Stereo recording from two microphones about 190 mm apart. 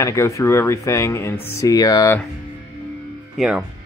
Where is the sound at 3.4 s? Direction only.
5° right (ahead or behind).